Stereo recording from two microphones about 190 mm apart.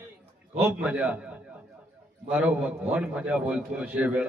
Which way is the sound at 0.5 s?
5° right (ahead or behind).